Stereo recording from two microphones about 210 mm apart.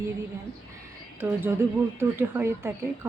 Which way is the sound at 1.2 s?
10° right (ahead or behind).